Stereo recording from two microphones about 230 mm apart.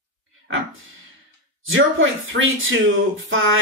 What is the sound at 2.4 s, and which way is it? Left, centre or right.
Speech, right.